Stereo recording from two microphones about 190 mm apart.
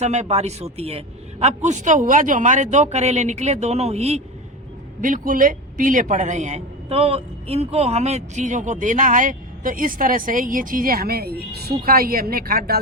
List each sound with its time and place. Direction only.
0.0 s a man's voice: 35° right (ahead or behind)
4.9 s a man's voice: 45° right (ahead or behind)